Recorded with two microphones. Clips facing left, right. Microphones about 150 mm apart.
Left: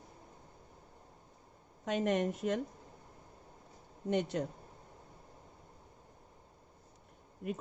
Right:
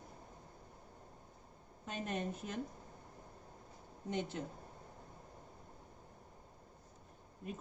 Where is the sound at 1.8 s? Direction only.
75° left (ahead or behind).